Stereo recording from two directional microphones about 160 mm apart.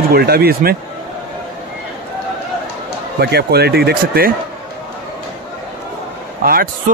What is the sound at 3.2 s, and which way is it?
Speech, 85° right.